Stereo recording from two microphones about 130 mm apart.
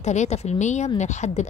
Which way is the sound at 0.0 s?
60° left (ahead or behind).